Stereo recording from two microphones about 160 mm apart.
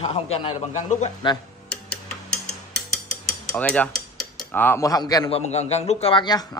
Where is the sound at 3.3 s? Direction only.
5° left (ahead or behind); by 5.3 s 25° left (ahead or behind).